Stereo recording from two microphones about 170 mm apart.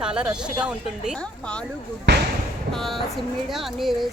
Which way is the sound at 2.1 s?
90° right.